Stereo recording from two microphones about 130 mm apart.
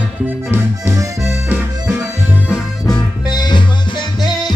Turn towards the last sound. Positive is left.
turn(degrees=35)  # may be behind; listen again after turning